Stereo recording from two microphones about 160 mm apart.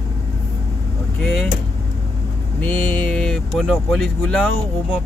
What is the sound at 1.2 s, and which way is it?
Speech, centre (ahead or behind).